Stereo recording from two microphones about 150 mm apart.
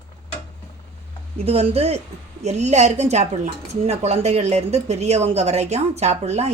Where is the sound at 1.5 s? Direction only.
40° right (ahead or behind).